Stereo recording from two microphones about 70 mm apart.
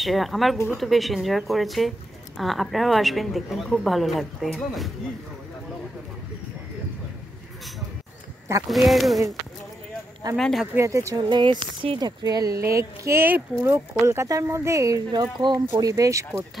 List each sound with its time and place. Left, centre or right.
0.0 s speech: centre
8.6 s speech: centre
10.3 s speech: centre
10.8 s speech: right
11.1 s speech: right
12.6 s speech: right
15.0 s speech: right